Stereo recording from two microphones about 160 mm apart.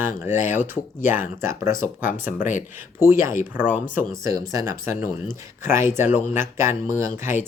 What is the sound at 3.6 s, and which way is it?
Speech, 50° left (ahead or behind).